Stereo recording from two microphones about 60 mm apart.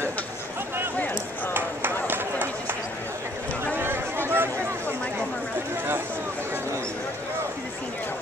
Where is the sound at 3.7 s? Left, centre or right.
Right.